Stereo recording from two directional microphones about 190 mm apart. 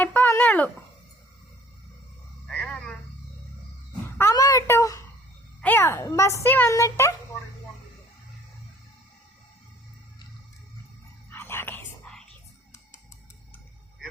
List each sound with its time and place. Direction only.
0.0 s dog: 10° left (ahead or behind)
2.5 s frog: 5° left (ahead or behind)
4.2 s a sound: 15° left (ahead or behind)
5.6 s speech: 10° left (ahead or behind)
11.3 s whispering: 10° left (ahead or behind)